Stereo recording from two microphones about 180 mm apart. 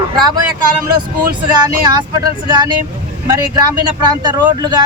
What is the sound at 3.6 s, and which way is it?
Speech, 25° right (ahead or behind).